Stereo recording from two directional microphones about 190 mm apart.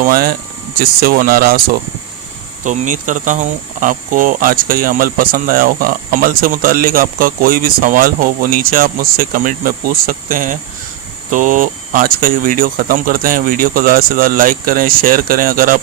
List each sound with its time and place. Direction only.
0.0 s speech: 50° right (ahead or behind)
2.6 s speech: 40° right (ahead or behind)